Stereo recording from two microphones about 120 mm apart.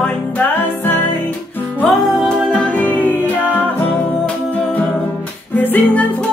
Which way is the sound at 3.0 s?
15° right (ahead or behind).